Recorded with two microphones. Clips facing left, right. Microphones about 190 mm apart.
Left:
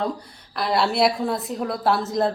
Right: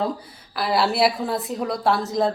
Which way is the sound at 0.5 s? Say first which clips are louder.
Even; centre (ahead or behind).